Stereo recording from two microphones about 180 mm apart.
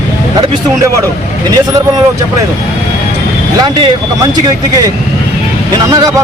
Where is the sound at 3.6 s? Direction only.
25° right (ahead or behind).